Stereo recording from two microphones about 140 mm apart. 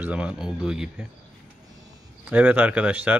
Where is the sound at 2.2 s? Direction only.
10° right (ahead or behind).